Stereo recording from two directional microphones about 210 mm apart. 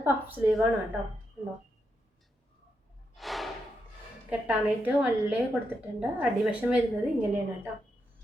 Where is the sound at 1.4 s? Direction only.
10° right (ahead or behind).